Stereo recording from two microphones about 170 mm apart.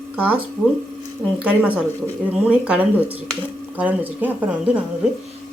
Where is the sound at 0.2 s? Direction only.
10° right (ahead or behind).